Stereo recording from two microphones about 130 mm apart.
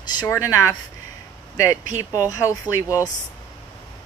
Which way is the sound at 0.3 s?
25° left (ahead or behind).